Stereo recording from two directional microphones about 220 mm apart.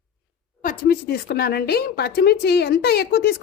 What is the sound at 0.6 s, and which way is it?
A woman's voice, 40° left (ahead or behind).